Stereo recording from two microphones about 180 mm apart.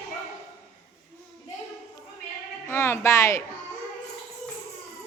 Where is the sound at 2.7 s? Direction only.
15° left (ahead or behind).